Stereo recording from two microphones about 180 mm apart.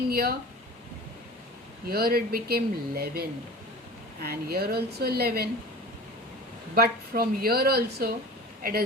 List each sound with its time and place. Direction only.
0.1 s speech: 60° right (ahead or behind)
1.9 s speech: 55° right (ahead or behind)
6.7 s speech: 55° right (ahead or behind)